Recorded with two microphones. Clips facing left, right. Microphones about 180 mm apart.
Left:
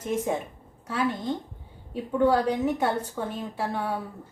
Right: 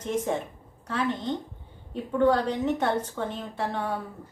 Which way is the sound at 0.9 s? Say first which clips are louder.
Left 1 dB; 10° left (ahead or behind).